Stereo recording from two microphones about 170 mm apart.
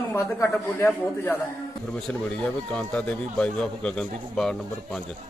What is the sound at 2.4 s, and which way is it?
A man's voice, 5° left (ahead or behind).